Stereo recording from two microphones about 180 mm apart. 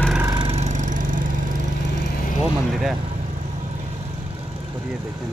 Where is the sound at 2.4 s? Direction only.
Centre (ahead or behind).